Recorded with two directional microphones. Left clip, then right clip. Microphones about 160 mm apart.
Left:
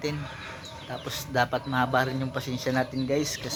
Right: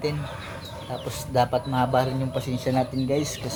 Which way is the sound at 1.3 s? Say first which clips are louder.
Right 3 dB; 5° right (ahead or behind).